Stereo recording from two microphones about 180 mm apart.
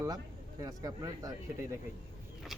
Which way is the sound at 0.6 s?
20° right (ahead or behind).